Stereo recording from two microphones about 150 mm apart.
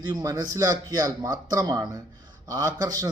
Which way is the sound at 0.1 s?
25° right (ahead or behind).